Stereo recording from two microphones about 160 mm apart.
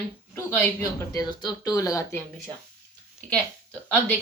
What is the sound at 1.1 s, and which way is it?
A woman's voice, 25° left (ahead or behind).